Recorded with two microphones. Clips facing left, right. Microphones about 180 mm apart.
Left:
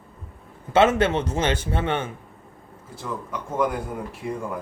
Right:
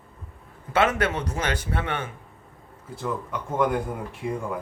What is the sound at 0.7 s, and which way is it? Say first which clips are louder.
Speech: left 4 dB; 25° left (ahead or behind).